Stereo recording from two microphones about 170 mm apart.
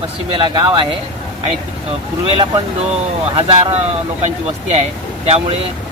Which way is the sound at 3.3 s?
35° right (ahead or behind).